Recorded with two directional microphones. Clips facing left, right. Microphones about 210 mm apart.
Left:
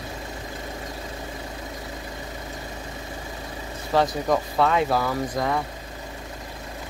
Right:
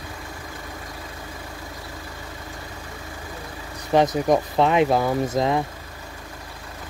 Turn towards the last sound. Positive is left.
turn(degrees=-20)  # may be behind; listen again after turning